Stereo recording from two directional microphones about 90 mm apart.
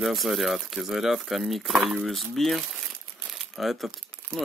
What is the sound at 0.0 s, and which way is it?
Speech, centre (ahead or behind).